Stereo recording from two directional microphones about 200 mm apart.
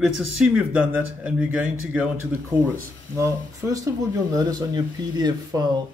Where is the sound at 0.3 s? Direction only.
5° right (ahead or behind).